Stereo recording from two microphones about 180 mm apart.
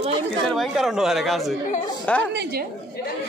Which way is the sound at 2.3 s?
70° right (ahead or behind).